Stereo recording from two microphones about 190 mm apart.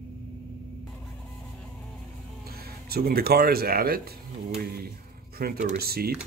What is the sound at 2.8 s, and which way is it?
Speech, 55° right (ahead or behind).